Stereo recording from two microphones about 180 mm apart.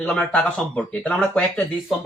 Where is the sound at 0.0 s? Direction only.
10° left (ahead or behind).